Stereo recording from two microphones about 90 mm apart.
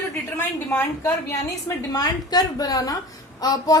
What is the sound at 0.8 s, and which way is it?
Speech, 30° left (ahead or behind).